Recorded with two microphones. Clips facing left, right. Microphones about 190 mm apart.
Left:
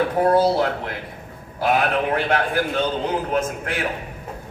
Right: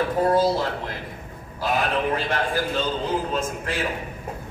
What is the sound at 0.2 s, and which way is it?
A man's voice, 60° left (ahead or behind).